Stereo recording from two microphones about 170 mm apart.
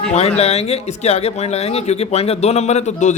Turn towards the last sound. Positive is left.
turn(degrees=40)  # may be behind; listen again after turning